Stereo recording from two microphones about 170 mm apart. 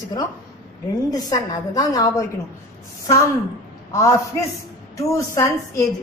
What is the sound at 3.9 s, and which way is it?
A woman's voice, 20° left (ahead or behind).